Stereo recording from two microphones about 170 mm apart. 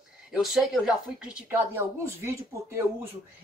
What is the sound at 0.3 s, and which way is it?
Speech, centre (ahead or behind).